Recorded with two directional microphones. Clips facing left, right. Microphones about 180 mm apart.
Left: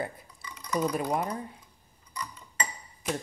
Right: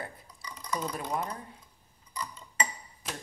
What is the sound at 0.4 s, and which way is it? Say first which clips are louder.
Drip: right 2 dB; 35° right (ahead or behind).